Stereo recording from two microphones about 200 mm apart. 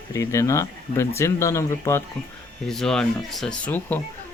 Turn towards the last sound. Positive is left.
turn(degrees=10)  # may be behind; listen again after turning